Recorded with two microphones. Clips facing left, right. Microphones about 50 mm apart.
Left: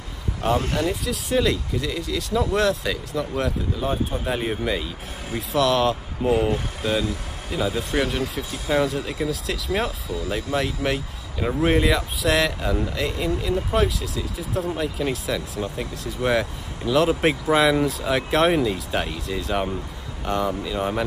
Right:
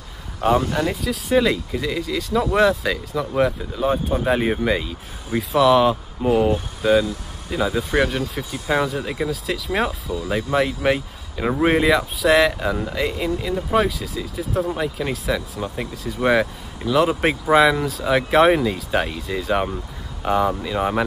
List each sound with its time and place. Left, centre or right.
0.4 s speech: centre
4.6 s speech: centre